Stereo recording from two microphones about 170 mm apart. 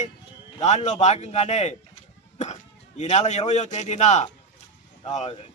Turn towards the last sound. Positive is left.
turn(degrees=40)  # may be behind; listen again after turning